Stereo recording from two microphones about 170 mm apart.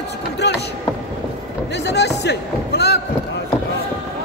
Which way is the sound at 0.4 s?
90° left.